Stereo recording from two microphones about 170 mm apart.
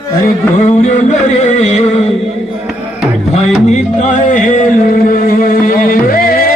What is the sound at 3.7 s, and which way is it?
Music, 45° left (ahead or behind).